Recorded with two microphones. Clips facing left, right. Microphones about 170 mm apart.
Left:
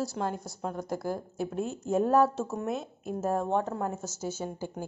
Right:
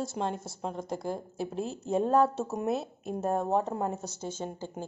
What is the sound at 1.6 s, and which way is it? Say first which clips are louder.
Speech: left 1 dB; 35° right (ahead or behind).